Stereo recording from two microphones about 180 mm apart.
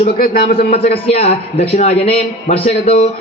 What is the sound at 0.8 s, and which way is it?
A man's voice, 35° left (ahead or behind).